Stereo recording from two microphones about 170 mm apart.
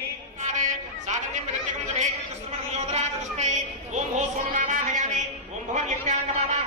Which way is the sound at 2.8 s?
40° right (ahead or behind).